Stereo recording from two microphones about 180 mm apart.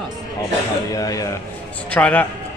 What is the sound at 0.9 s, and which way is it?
Speech, 20° left (ahead or behind).